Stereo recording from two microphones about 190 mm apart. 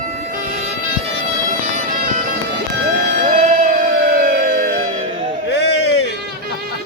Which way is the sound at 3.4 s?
45° right (ahead or behind).